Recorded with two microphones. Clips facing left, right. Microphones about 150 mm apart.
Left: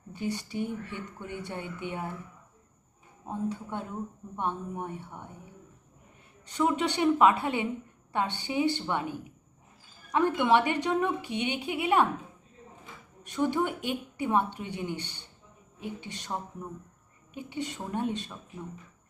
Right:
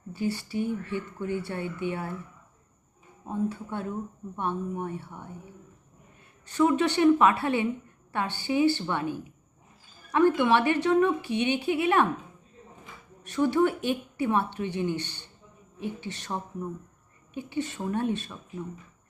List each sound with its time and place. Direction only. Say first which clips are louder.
0.1 s a woman's voice: right 3 dB; 20° left (ahead or behind)
3.5 s a woman's voice: right 3 dB; 20° left (ahead or behind)
6.5 s a woman's voice: right 4 dB; 15° left (ahead or behind)
13.2 s a woman's voice: right 4 dB; 15° left (ahead or behind)
17.3 s a woman's voice: right 4 dB; 15° left (ahead or behind)